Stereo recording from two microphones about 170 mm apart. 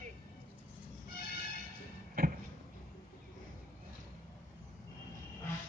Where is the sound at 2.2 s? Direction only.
60° right (ahead or behind).